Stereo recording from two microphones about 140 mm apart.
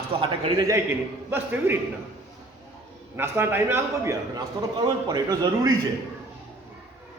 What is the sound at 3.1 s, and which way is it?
A man's voice, 15° right (ahead or behind).